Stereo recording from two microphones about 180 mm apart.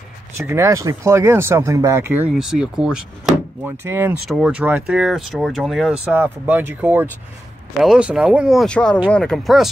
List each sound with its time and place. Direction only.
0.4 s speech: 15° right (ahead or behind); by 9.7 s centre (ahead or behind)